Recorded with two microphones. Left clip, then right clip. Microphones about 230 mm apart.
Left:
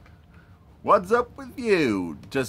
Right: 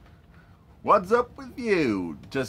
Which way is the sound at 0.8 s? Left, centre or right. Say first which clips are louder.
Left 1 dB; centre.